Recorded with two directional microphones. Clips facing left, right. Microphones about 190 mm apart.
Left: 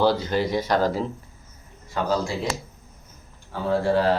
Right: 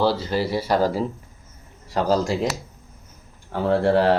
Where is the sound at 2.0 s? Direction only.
40° right (ahead or behind).